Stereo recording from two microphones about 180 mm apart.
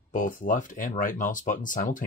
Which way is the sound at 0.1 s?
50° left (ahead or behind).